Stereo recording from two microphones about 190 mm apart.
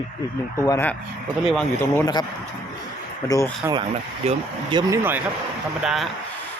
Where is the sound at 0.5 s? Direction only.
15° left (ahead or behind).